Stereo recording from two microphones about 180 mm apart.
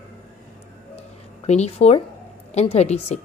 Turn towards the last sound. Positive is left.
turn(degrees=35)  # may be behind; listen again after turning